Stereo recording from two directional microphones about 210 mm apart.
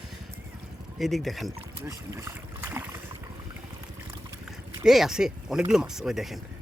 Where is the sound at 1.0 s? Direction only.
Centre (ahead or behind).